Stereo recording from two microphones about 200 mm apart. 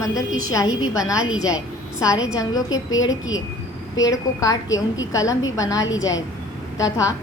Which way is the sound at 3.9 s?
15° left (ahead or behind).